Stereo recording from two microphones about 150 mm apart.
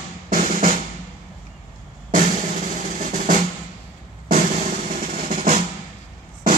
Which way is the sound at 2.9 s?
60° right (ahead or behind).